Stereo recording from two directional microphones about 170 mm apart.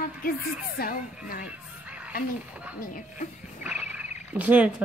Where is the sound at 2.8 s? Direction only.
50° left (ahead or behind).